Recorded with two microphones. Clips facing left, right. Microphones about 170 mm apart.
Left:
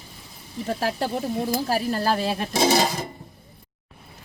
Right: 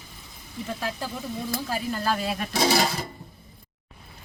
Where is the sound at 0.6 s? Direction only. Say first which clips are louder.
Left 6 dB; 40° left (ahead or behind); by 3.1 s 20° left (ahead or behind).